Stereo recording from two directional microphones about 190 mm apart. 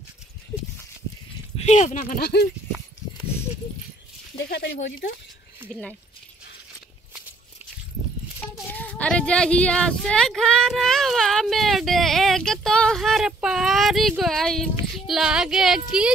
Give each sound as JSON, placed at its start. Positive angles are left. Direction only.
{"t": 1.6, "sound": "speech", "side_deg": 35}
{"t": 4.4, "sound": "speech", "side_deg": 60}
{"t": 5.7, "sound": "speech", "side_deg": 5}
{"t": 8.6, "sound": "speech", "side_deg": 5}